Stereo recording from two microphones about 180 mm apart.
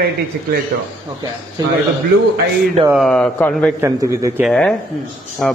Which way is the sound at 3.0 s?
5° left (ahead or behind).